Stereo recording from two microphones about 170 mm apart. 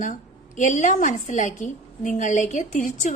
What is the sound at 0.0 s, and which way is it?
A woman's voice, 50° left (ahead or behind).